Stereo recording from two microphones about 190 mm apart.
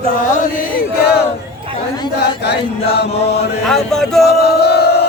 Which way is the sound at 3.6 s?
Centre (ahead or behind).